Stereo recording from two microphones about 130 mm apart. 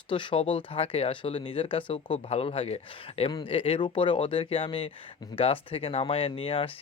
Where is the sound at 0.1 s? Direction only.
40° left (ahead or behind).